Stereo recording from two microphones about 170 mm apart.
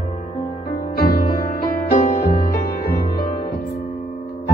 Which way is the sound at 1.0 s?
55° left (ahead or behind).